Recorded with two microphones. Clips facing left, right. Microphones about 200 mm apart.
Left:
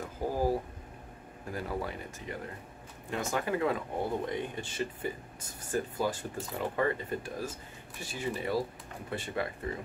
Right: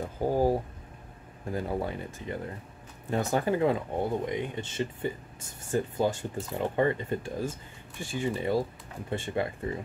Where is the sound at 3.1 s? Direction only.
35° right (ahead or behind).